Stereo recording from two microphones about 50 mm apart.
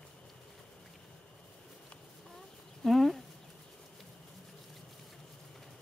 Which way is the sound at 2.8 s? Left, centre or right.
Centre.